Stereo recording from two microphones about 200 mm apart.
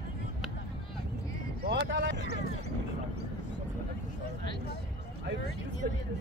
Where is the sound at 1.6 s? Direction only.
60° right (ahead or behind).